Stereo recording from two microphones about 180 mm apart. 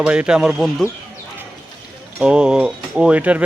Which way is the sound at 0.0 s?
5° right (ahead or behind).